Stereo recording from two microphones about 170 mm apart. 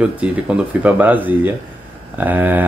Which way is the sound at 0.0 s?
5° right (ahead or behind).